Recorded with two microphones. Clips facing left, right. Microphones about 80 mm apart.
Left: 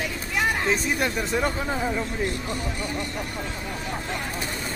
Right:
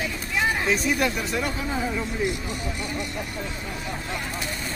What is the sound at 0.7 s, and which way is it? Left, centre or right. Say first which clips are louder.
Speech: right 1 dB; left.